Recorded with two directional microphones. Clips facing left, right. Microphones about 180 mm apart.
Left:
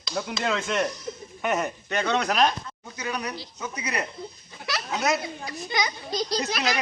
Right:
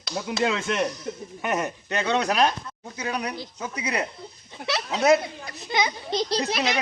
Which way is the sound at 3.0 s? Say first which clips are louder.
Right 2 dB; 30° right (ahead or behind).